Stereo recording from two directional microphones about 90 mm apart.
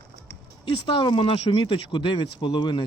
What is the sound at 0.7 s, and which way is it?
Speech, 80° left.